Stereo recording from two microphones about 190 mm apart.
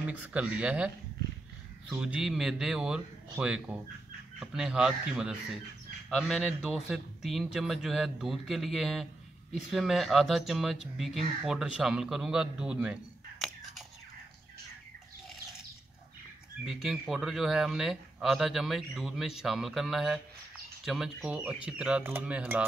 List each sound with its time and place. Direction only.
0.0 s speech: 5° right (ahead or behind)
16.6 s speech: centre (ahead or behind)